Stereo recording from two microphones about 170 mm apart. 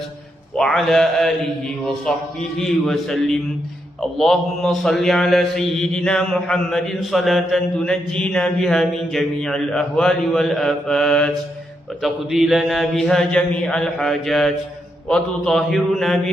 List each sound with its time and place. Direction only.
0.6 s a man's voice: centre (ahead or behind)